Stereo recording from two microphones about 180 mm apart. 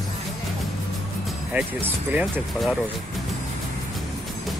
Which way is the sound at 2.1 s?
10° right (ahead or behind).